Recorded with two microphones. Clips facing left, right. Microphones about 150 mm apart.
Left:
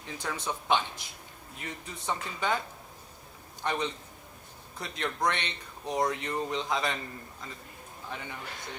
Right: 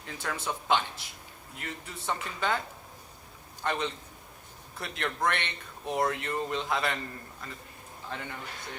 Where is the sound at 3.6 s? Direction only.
15° left (ahead or behind).